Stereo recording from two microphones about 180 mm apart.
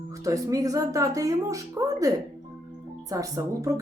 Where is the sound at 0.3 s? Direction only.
20° right (ahead or behind).